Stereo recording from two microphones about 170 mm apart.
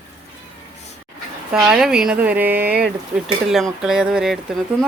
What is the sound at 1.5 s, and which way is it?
Speech, 5° right (ahead or behind).